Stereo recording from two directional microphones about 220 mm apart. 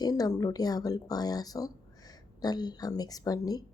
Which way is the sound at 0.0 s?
15° left (ahead or behind).